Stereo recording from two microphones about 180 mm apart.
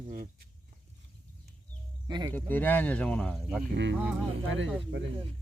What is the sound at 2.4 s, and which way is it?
Speech, 10° left (ahead or behind).